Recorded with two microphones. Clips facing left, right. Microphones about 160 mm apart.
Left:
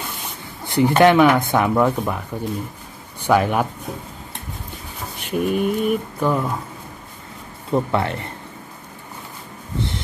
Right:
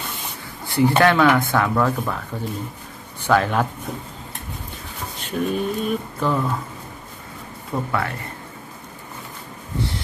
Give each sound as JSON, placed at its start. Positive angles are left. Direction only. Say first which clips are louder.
{"t": 0.7, "sound": "speech", "louder": "left 3 dB", "side_deg": 20}
{"t": 5.2, "sound": "speech", "louder": "left 3 dB", "side_deg": 10}
{"t": 7.7, "sound": "speech", "louder": "left 5 dB", "side_deg": 25}